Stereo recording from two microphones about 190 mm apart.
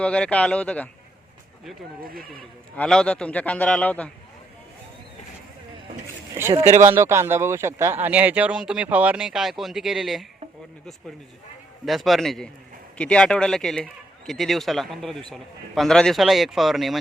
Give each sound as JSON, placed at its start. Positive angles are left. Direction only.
{"t": 0.0, "sound": "speech", "side_deg": 5}
{"t": 2.0, "sound": "speech", "side_deg": -50}
{"t": 2.7, "sound": "a man's voice", "side_deg": 5}
{"t": 6.3, "sound": "speech", "side_deg": -15}
{"t": 6.6, "sound": "speech", "side_deg": -40}
{"t": 6.8, "sound": "speech", "side_deg": -15}
{"t": 11.9, "sound": "speech", "side_deg": 0}